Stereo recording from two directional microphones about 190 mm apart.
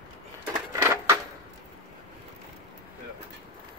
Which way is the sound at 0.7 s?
15° right (ahead or behind).